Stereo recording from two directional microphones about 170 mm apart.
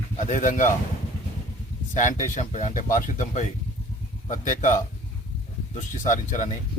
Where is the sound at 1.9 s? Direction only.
45° left (ahead or behind).